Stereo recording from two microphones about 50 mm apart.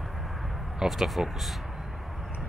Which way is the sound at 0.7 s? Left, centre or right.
Centre.